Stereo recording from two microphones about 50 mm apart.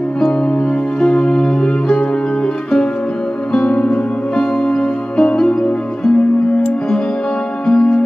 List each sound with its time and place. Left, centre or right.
0.2 s music: centre
3.6 s music: left
7.6 s music: centre